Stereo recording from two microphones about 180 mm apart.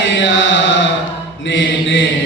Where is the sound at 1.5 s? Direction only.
85° left.